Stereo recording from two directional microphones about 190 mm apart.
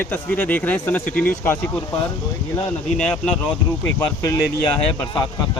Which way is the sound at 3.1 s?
5° left (ahead or behind).